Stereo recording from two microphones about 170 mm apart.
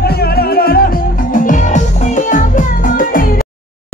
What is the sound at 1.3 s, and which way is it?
Music, 50° left (ahead or behind).